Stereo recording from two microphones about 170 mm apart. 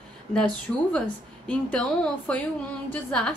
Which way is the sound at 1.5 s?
5° left (ahead or behind).